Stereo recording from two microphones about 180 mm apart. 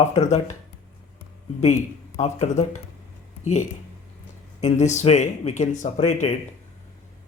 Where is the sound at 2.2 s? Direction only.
40° left (ahead or behind).